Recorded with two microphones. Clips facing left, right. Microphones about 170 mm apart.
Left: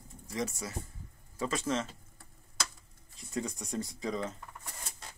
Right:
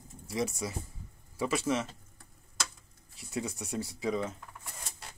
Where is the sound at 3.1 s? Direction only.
5° right (ahead or behind).